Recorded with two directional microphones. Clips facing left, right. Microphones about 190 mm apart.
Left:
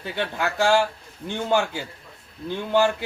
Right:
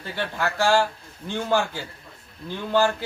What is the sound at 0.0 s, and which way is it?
Speech, 15° left (ahead or behind).